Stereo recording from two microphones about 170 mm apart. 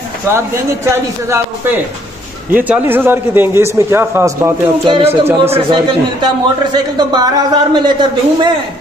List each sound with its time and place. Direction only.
0.3 s a man's voice: 15° right (ahead or behind)
4.8 s a man's voice: 30° right (ahead or behind)
5.2 s a man's voice: 15° right (ahead or behind)
5.7 s a man's voice: 25° right (ahead or behind)